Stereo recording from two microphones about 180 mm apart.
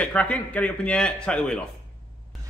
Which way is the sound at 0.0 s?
5° left (ahead or behind).